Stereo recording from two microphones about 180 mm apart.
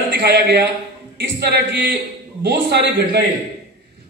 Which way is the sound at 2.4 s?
70° right (ahead or behind).